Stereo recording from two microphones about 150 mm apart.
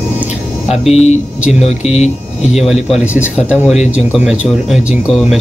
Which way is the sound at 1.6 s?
45° left (ahead or behind).